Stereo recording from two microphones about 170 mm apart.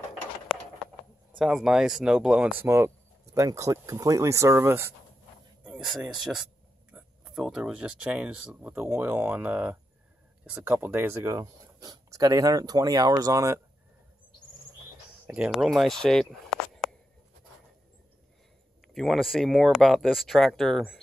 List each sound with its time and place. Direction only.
1.4 s speech: 5° right (ahead or behind)
5.7 s speech: centre (ahead or behind); by 13.6 s 20° right (ahead or behind)
15.2 s speech: 5° right (ahead or behind)
18.9 s speech: centre (ahead or behind)